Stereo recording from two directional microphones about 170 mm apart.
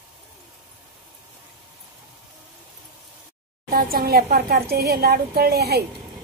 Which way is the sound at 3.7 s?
60° right (ahead or behind).